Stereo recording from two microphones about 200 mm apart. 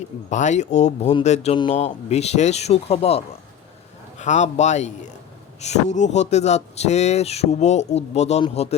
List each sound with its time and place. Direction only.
0.3 s speech: 35° left (ahead or behind)